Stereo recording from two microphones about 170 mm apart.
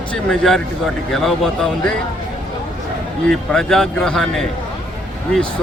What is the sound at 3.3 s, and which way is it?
Speech, 5° left (ahead or behind).